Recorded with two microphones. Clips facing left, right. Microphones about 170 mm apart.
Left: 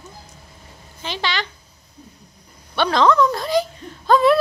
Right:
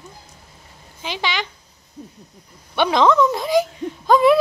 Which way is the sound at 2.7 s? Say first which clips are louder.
Right 1 dB; 15° right (ahead or behind).